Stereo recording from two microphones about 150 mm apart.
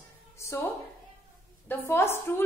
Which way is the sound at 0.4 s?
15° left (ahead or behind).